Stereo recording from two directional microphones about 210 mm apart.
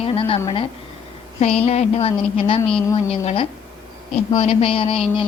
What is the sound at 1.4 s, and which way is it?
A woman's voice, 30° left (ahead or behind).